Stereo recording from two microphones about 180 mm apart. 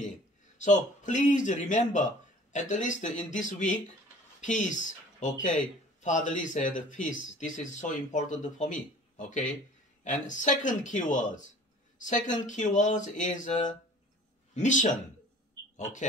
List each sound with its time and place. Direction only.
0.6 s a man's voice: 40° left (ahead or behind)